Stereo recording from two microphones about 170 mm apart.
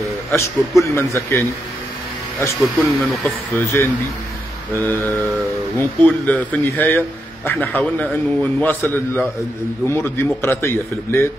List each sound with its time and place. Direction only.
0.7 s a man's voice: 15° left (ahead or behind)
2.6 s speech: centre (ahead or behind)
3.5 s a man's voice: 15° left (ahead or behind)